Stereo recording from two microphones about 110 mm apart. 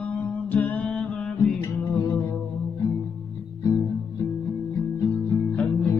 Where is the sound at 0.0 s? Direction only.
15° left (ahead or behind).